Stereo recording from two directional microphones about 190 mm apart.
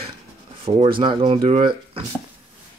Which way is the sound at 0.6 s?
30° right (ahead or behind).